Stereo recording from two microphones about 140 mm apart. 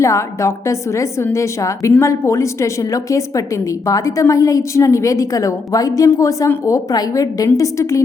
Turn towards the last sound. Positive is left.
turn(degrees=20)  # may be behind; listen again after turning